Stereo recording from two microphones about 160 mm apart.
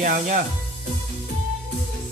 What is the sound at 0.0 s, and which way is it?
Speech, 70° right (ahead or behind).